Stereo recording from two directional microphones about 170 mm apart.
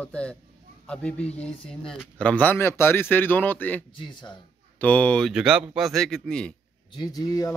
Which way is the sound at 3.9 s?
25° left (ahead or behind).